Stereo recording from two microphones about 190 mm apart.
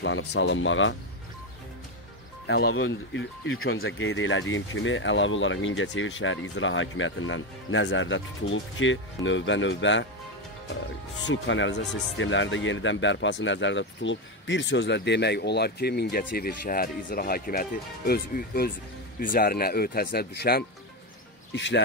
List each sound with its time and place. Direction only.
0.0 s speech: 70° left (ahead or behind); by 0.9 s 90° left
2.4 s speech: 70° left (ahead or behind)
11.2 s speech: 80° left; by 20.6 s 55° left (ahead or behind)
21.5 s speech: 70° left (ahead or behind)